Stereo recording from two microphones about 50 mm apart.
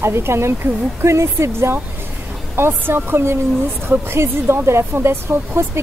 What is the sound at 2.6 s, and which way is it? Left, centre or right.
Speech, right.